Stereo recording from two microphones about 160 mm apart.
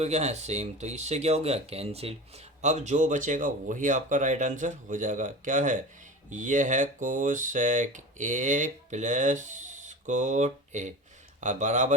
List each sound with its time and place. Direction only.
0.0 s speech: 45° right (ahead or behind)